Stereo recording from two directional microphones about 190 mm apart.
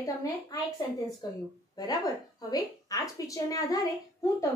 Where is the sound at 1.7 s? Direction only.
20° left (ahead or behind).